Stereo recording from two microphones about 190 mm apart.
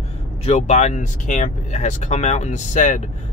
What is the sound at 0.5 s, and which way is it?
Speech, 40° left (ahead or behind).